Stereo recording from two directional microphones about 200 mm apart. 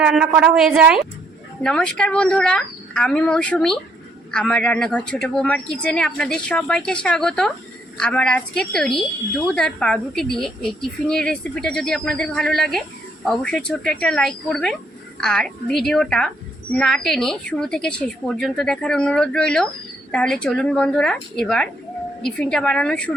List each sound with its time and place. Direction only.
0.0 s a woman's voice: 5° right (ahead or behind)